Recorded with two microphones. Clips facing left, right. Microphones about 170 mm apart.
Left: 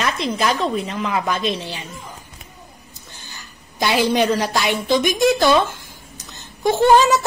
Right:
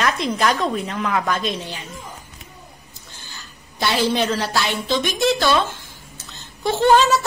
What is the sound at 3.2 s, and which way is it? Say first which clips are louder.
A woman's voice: left 1 dB; 15° left (ahead or behind).